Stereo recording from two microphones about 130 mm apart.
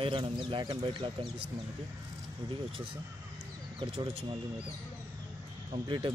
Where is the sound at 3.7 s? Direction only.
40° right (ahead or behind).